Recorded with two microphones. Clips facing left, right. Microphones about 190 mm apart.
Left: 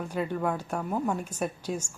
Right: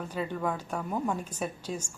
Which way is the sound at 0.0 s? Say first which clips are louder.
Left 3 dB; 10° left (ahead or behind).